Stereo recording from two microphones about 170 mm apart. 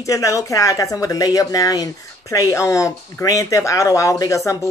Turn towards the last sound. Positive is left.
turn(degrees=20)  # may be behind; listen again after turning